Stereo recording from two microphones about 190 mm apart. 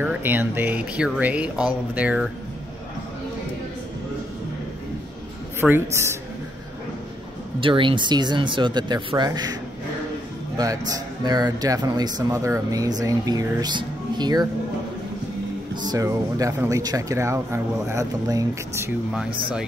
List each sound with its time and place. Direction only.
0.0 s speech: 10° right (ahead or behind)
5.6 s speech: 15° right (ahead or behind)
7.6 s speech: 25° right (ahead or behind)
10.6 s speech: 20° right (ahead or behind)
15.7 s speech: 20° right (ahead or behind)